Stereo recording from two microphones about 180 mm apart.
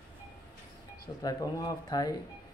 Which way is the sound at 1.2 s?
20° left (ahead or behind).